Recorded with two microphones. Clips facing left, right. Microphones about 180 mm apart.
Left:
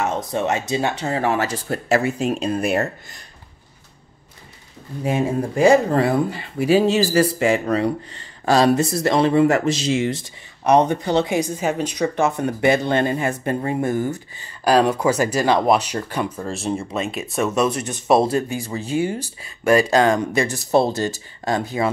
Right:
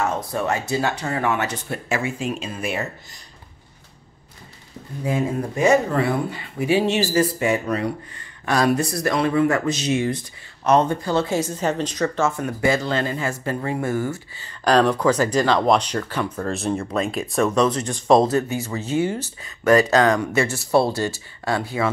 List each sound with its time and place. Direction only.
0.0 s speech: 20° left (ahead or behind); by 3.3 s 55° left (ahead or behind)
5.0 s speech: 25° left (ahead or behind)
7.3 s speech: 90° left
7.7 s speech: 30° left (ahead or behind)
10.6 s a woman's voice: 15° left (ahead or behind)
20.1 s speech: 30° left (ahead or behind)
21.8 s speech: 30° left (ahead or behind)